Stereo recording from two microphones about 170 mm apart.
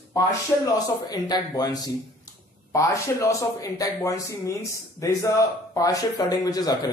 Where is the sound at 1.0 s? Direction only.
25° left (ahead or behind).